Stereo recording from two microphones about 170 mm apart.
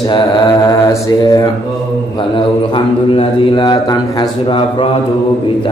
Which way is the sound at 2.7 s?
25° left (ahead or behind).